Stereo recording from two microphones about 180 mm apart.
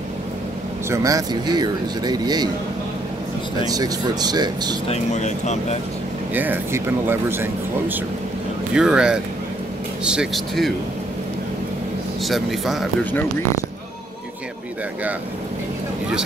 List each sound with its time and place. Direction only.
0.8 s speech: 15° right (ahead or behind)
3.6 s speech: 20° right (ahead or behind)
4.8 s speech: 40° left (ahead or behind)
6.3 s speech: 10° right (ahead or behind)
8.7 s speech: 5° right (ahead or behind)
12.3 s speech: centre (ahead or behind)